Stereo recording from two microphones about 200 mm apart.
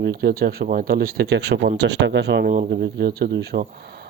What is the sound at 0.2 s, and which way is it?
Speech, 50° right (ahead or behind).